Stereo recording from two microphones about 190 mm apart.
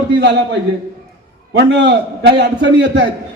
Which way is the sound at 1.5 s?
65° right (ahead or behind).